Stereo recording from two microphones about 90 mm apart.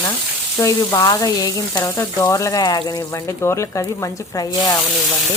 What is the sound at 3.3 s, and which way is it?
Speech, 30° left (ahead or behind).